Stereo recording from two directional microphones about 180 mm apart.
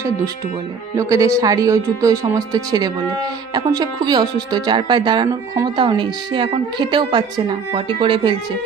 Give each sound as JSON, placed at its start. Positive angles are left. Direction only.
{"t": 0.9, "sound": "speech", "side_deg": -15}